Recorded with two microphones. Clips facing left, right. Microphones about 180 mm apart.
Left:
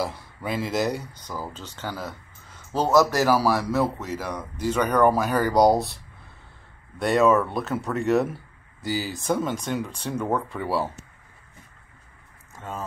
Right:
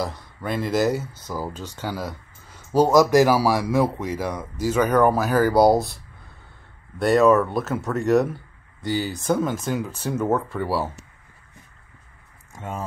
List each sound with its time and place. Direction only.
0.0 s speech: 5° left (ahead or behind)
7.0 s speech: centre (ahead or behind)
12.5 s speech: 15° right (ahead or behind)